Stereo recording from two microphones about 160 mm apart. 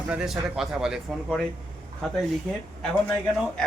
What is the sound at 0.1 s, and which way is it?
Speech, 5° right (ahead or behind).